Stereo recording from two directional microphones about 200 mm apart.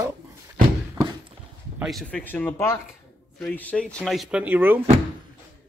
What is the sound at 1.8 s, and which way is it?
Speech, centre (ahead or behind).